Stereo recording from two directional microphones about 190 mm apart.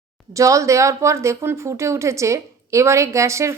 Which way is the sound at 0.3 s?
15° right (ahead or behind).